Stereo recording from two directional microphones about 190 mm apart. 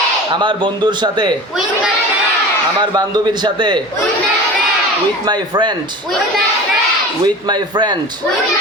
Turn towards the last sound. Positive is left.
turn(degrees=-25)  # may be behind; listen again after turning